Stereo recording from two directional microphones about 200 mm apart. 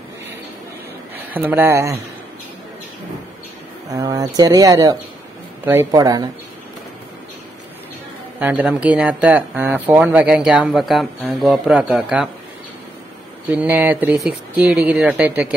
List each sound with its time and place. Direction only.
1.1 s speech: 10° right (ahead or behind)
3.9 s speech: 20° right (ahead or behind)
8.4 s speech: 5° right (ahead or behind)
13.5 s speech: 10° right (ahead or behind)